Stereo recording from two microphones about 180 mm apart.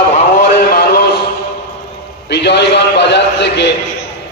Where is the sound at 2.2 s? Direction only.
70° left (ahead or behind).